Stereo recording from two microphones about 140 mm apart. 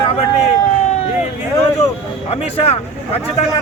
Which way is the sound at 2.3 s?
45° left (ahead or behind).